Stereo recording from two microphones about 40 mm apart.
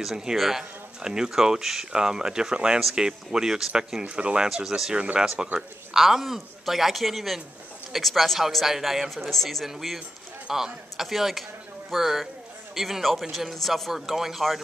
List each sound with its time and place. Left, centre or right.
0.0 s speech: centre
1.0 s speech: centre
4.0 s speech: right
4.6 s speech: centre
4.9 s speech: right
5.2 s speech: centre
9.7 s speech: centre